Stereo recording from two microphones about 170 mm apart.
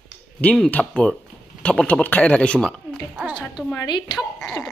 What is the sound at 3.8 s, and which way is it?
Speech, 25° left (ahead or behind).